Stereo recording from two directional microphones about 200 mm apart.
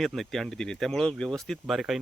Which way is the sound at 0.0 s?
Centre (ahead or behind).